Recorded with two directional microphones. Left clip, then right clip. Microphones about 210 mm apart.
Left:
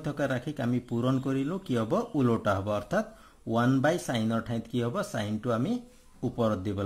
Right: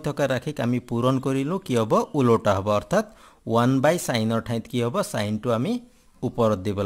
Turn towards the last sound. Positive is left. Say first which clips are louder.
# right 7 dB
turn(degrees=-45)  # may be behind; listen again after turning